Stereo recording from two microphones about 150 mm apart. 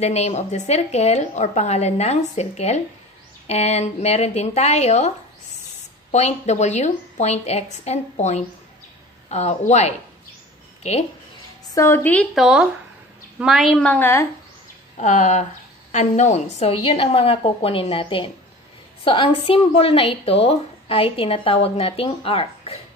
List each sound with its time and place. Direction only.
0.0 s speech: 45° left (ahead or behind)
6.1 s speech: 45° left (ahead or behind)
11.7 s a woman's voice: 15° left (ahead or behind)
12.4 s a woman's voice: 5° right (ahead or behind)
13.8 s a woman's voice: 15° left (ahead or behind)
15.0 s speech: 50° left (ahead or behind)